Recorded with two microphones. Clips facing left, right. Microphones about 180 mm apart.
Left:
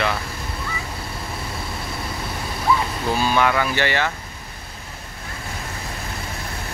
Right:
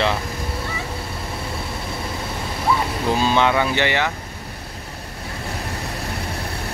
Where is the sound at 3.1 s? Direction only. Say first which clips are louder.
Right 1 dB; 20° right (ahead or behind).